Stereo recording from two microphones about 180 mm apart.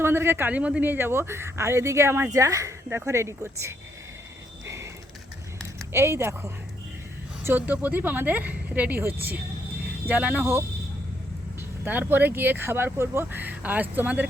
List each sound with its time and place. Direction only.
0.0 s a man's voice: 15° right (ahead or behind)
4.6 s a sound: 15° right (ahead or behind)
5.9 s a man's voice: 15° right (ahead or behind)
10.1 s a man's voice: 10° right (ahead or behind)
11.9 s a man's voice: 10° right (ahead or behind)